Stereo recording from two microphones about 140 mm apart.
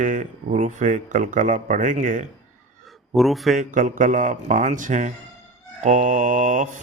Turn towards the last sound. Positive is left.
turn(degrees=-65)  # may be behind; listen again after turning